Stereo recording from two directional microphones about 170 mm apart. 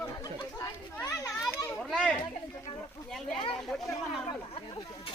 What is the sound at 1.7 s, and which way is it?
Speech, 5° left (ahead or behind).